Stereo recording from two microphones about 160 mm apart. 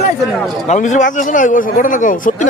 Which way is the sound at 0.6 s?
50° left (ahead or behind).